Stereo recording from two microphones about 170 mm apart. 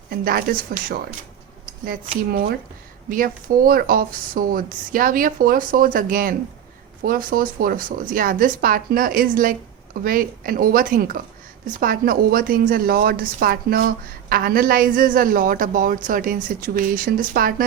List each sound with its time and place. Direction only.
0.1 s a woman's voice: 60° right (ahead or behind)
3.1 s a woman's voice: 55° right (ahead or behind)